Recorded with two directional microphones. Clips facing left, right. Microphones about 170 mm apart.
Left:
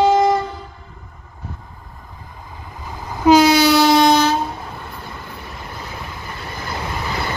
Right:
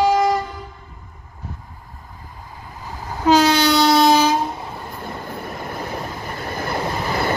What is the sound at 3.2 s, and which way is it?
Train, 10° left (ahead or behind).